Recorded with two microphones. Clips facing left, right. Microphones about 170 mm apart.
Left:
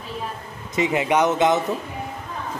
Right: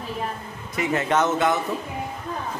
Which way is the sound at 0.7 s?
15° left (ahead or behind).